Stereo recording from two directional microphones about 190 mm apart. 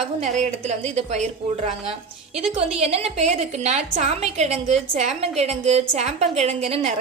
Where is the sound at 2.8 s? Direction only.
35° right (ahead or behind).